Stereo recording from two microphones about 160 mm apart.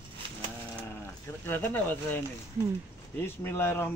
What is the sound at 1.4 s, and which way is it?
Speech, 15° left (ahead or behind).